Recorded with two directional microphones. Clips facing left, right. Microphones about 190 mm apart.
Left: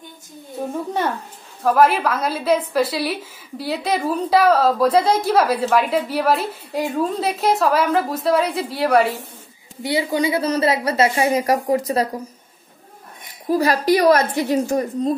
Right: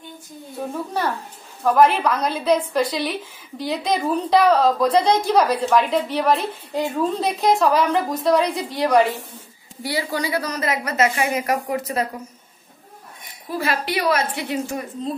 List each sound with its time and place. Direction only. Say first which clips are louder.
1.6 s a woman's voice: even; 5° left (ahead or behind)
9.8 s a woman's voice: left 5 dB; 20° left (ahead or behind)
13.5 s a woman's voice: left 8 dB; 40° left (ahead or behind)